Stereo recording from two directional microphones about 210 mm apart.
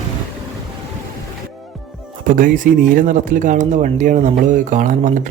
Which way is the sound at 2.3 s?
40° right (ahead or behind).